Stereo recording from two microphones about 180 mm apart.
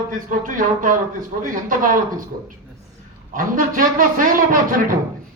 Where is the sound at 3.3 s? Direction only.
50° right (ahead or behind).